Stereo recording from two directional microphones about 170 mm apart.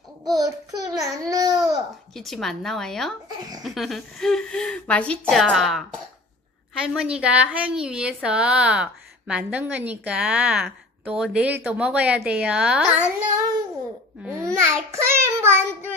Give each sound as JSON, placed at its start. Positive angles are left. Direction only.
{"t": 0.4, "sound": "a sound", "side_deg": -20}
{"t": 1.3, "sound": "babbling", "side_deg": -20}
{"t": 2.1, "sound": "speech", "side_deg": 0}
{"t": 3.3, "sound": "speech", "side_deg": -25}
{"t": 3.6, "sound": "speech", "side_deg": 0}
{"t": 6.9, "sound": "a woman's voice", "side_deg": -5}
{"t": 14.2, "sound": "a woman's voice", "side_deg": -15}